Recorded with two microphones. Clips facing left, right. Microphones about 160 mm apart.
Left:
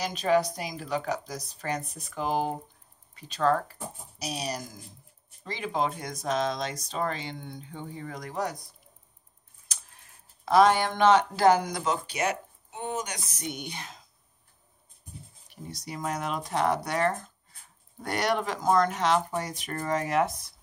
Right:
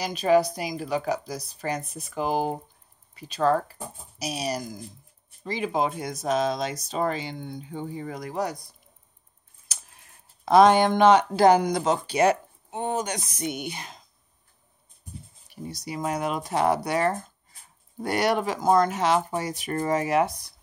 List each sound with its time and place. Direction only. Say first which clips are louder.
0.0 s speech: right 4 dB; 5° right (ahead or behind)
10.4 s speech: right 4 dB; 20° right (ahead or behind)
11.8 s speech: right 7 dB; 30° right (ahead or behind)
12.9 s a sound: right 5 dB; 30° right (ahead or behind)
13.5 s speech: right 2 dB; 5° right (ahead or behind)
15.5 s speech: right 5 dB; 5° right (ahead or behind)